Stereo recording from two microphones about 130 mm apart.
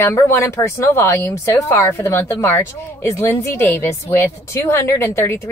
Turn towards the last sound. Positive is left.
turn(degrees=20)  # may be behind; listen again after turning